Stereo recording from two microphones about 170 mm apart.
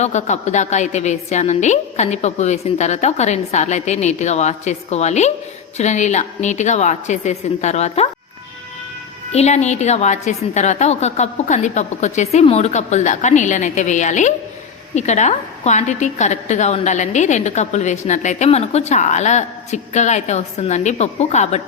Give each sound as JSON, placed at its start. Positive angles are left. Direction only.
{"t": 0.0, "sound": "a woman's voice", "side_deg": 45}
{"t": 9.3, "sound": "a woman's voice", "side_deg": 40}